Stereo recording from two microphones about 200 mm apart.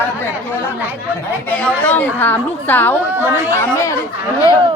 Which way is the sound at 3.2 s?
10° right (ahead or behind).